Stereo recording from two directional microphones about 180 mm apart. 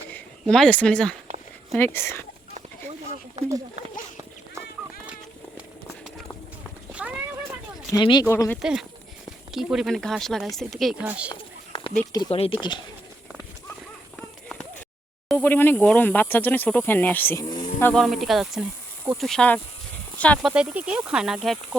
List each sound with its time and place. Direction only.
0.1 s speech: 5° left (ahead or behind)
2.6 s snake: 35° right (ahead or behind)
7.0 s a sound: centre (ahead or behind)
7.9 s speech: 25° left (ahead or behind)
8.6 s speech: 5° right (ahead or behind)
11.3 s a sound: 30° left (ahead or behind)
12.3 s speech: 30° left (ahead or behind)
14.2 s clip-clop: 5° left (ahead or behind)
15.3 s speech: 10° left (ahead or behind)
20.5 s speech: 5° right (ahead or behind)